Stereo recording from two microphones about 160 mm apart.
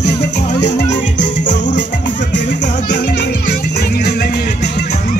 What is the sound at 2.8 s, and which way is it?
Music, 65° left (ahead or behind).